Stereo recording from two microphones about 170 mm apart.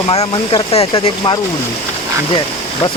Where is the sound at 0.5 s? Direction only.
35° left (ahead or behind).